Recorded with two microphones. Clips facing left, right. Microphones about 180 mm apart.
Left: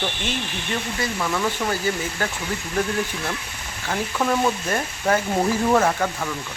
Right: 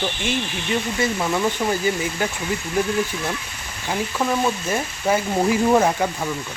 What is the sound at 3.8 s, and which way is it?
Frying, 5° right (ahead or behind).